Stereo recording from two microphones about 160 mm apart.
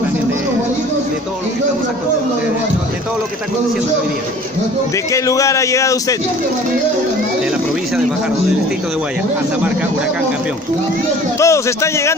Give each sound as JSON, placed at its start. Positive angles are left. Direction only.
{"t": 5.1, "sound": "a man's voice", "side_deg": 20}
{"t": 11.3, "sound": "a man's voice", "side_deg": 20}